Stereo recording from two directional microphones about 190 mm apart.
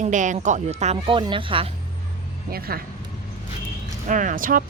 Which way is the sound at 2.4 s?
50° right (ahead or behind).